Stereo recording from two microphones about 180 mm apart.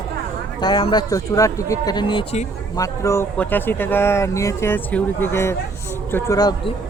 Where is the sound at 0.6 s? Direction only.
25° left (ahead or behind).